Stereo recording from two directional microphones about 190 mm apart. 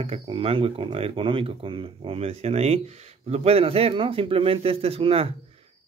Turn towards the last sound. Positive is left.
turn(degrees=-30)  # may be behind; listen again after turning